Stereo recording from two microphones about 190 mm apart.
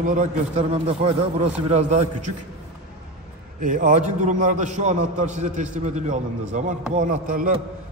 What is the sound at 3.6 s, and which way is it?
A man's voice, 45° right (ahead or behind).